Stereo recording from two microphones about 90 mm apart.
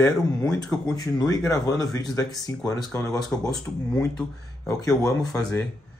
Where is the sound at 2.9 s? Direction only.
30° left (ahead or behind).